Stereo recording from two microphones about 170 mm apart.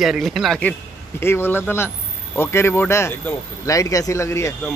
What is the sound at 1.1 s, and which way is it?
A man's voice, 15° left (ahead or behind).